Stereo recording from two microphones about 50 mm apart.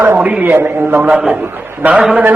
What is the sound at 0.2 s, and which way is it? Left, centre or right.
Speech, right.